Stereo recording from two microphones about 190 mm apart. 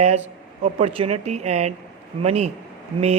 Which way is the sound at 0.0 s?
35° right (ahead or behind).